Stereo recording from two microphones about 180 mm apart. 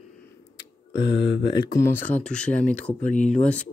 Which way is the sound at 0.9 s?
80° left.